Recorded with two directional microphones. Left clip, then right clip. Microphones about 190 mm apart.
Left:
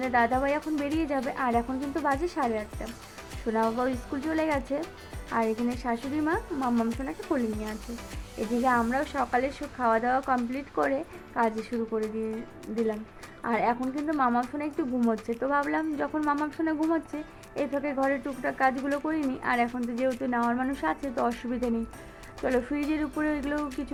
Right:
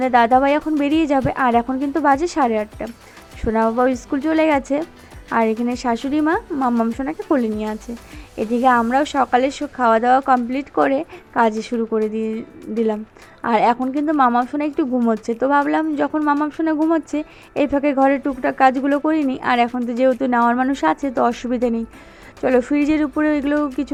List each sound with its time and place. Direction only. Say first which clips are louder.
0.0 s speech: right 11 dB; 40° right (ahead or behind)
13.4 s speech: right 11 dB; 40° right (ahead or behind)